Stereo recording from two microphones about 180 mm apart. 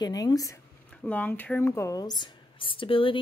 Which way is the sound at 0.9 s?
10° left (ahead or behind).